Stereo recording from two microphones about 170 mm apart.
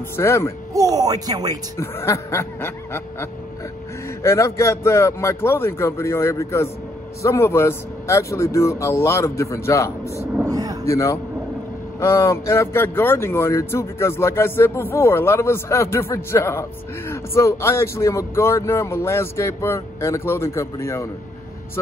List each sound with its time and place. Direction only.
0.1 s speech: 15° left (ahead or behind)
0.7 s speech: 20° right (ahead or behind)
1.8 s speech: 15° left (ahead or behind)
10.4 s vehicle: 20° right (ahead or behind)
10.9 s speech: 15° left (ahead or behind)